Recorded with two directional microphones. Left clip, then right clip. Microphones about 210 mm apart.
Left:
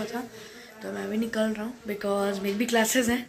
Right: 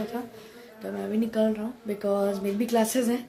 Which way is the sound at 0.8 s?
5° right (ahead or behind).